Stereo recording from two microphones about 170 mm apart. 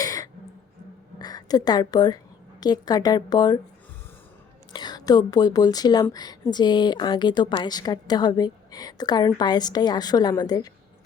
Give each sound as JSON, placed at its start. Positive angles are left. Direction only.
{"t": 0.0, "sound": "cough", "side_deg": 20}
{"t": 1.2, "sound": "a woman's voice", "side_deg": 25}
{"t": 4.7, "sound": "speech", "side_deg": 25}